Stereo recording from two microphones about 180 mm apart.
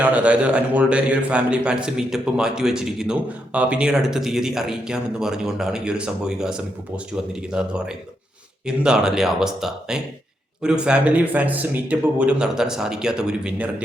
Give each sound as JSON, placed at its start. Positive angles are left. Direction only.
{"t": 0.0, "sound": "a man's voice", "side_deg": -10}